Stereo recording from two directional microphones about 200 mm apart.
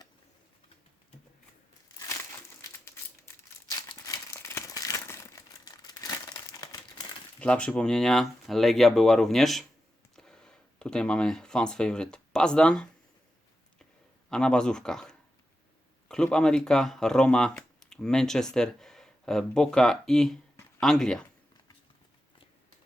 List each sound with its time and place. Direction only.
2.8 s crumpling: 15° left (ahead or behind)
7.3 s speech: 5° left (ahead or behind)
14.3 s speech: 5° left (ahead or behind)
20.6 s a sound: 5° left (ahead or behind)